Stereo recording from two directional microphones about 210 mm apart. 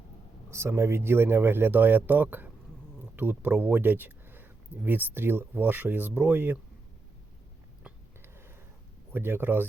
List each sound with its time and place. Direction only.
0.5 s speech: 10° right (ahead or behind)
7.9 s a sound: 10° right (ahead or behind)
9.1 s speech: 10° right (ahead or behind)